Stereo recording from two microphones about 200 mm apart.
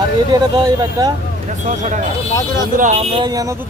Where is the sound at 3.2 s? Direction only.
15° right (ahead or behind).